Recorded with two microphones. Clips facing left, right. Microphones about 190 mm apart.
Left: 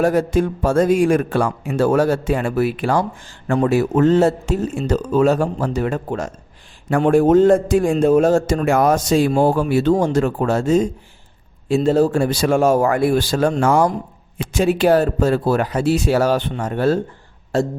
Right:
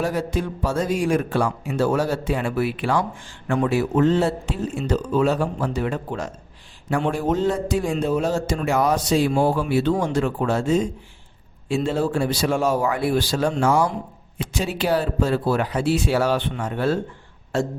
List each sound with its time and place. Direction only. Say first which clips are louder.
0.0 s a man's voice: left 7 dB; 50° left (ahead or behind)